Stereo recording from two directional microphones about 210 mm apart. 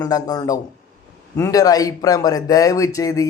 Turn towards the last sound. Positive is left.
turn(degrees=15)  # may be behind; listen again after turning